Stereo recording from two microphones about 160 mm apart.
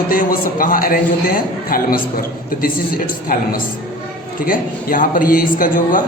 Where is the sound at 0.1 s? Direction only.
60° left (ahead or behind).